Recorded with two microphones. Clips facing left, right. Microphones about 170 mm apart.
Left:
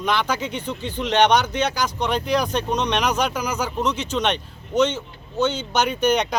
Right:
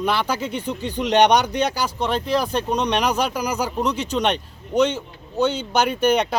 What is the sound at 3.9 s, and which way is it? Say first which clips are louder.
Speech: right 2 dB; 35° right (ahead or behind).